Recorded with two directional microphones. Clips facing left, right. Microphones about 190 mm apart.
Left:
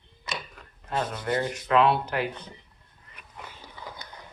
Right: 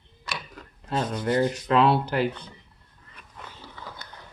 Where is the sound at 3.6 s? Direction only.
15° left (ahead or behind).